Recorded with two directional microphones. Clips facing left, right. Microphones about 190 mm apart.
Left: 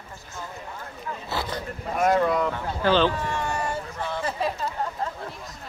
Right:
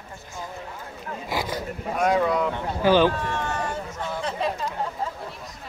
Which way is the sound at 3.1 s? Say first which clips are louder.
Even; 10° left (ahead or behind).